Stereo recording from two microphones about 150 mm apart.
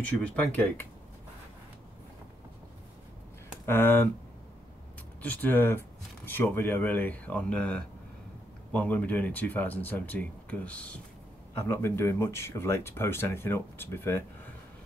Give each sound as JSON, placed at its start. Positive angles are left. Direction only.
{"t": 0.4, "sound": "speech", "side_deg": 10}
{"t": 3.6, "sound": "speech", "side_deg": 15}
{"t": 5.2, "sound": "speech", "side_deg": 10}